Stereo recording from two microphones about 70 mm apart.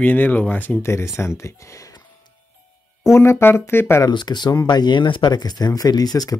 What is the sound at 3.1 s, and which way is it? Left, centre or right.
Speech, left.